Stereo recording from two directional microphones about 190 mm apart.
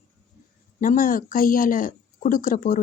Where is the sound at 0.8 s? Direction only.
45° left (ahead or behind).